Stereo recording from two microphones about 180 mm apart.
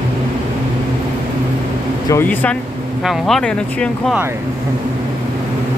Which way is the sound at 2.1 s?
10° left (ahead or behind).